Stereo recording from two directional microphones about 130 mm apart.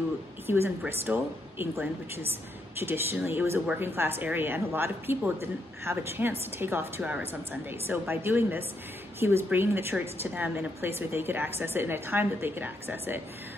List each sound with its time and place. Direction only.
0.5 s a woman's voice: 15° right (ahead or behind)